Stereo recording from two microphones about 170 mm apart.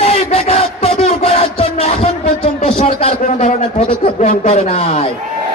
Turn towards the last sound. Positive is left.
turn(degrees=40)  # may be behind; listen again after turning